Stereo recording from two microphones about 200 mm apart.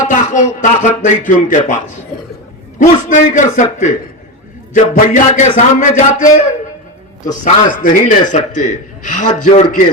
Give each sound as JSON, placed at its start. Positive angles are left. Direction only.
{"t": 0.1, "sound": "a man's voice", "side_deg": 40}